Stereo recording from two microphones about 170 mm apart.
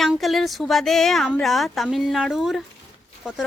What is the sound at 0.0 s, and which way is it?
A woman's voice, centre (ahead or behind).